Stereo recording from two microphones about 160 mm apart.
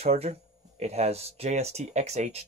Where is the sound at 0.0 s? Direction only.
40° right (ahead or behind).